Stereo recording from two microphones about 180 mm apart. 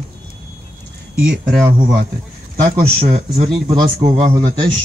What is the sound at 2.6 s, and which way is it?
Speech, 50° right (ahead or behind).